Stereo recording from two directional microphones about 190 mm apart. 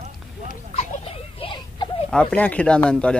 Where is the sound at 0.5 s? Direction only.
35° left (ahead or behind).